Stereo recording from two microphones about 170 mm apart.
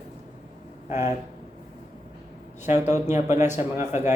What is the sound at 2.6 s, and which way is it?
Speech, 45° left (ahead or behind).